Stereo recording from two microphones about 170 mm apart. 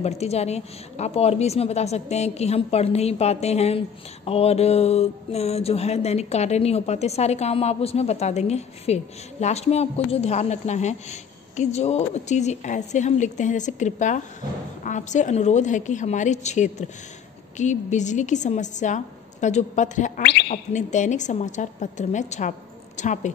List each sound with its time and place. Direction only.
0.0 s a woman's voice: 40° left (ahead or behind)